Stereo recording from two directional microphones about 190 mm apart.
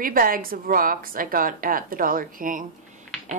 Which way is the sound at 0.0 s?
50° right (ahead or behind).